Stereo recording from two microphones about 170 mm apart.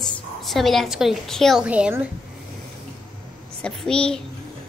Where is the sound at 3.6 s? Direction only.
5° left (ahead or behind).